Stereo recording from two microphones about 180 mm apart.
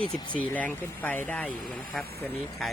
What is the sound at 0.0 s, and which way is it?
Speech, 25° left (ahead or behind).